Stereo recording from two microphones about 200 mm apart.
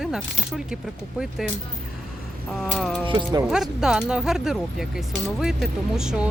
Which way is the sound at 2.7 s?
Centre (ahead or behind).